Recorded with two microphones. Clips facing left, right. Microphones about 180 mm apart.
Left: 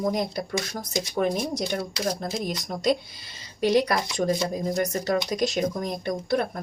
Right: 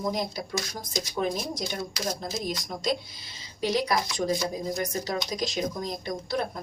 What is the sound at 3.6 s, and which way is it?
Speech, 65° left (ahead or behind).